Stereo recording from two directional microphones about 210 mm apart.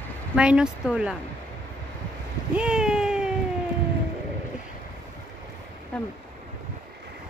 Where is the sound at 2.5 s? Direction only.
5° right (ahead or behind).